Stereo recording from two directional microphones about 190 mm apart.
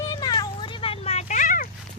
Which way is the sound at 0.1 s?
20° left (ahead or behind).